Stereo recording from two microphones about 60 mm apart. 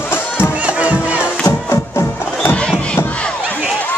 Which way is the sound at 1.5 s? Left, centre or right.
Left.